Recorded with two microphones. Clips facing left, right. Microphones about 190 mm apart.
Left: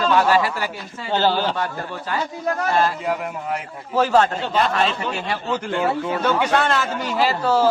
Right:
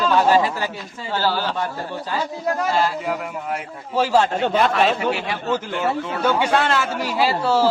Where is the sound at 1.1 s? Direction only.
20° left (ahead or behind).